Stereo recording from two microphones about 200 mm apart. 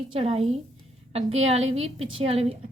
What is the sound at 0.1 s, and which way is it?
A woman's voice, 30° right (ahead or behind).